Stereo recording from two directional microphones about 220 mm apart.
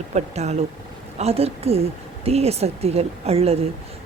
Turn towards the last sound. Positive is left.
turn(degrees=-25)  # may be behind; listen again after turning